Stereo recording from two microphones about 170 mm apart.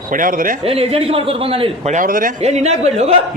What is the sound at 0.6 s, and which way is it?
A man's voice, 35° right (ahead or behind).